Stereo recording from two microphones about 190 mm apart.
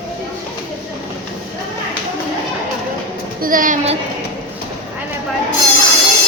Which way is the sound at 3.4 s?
45° right (ahead or behind).